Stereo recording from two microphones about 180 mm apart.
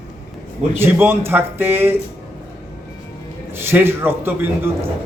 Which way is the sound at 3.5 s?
15° right (ahead or behind).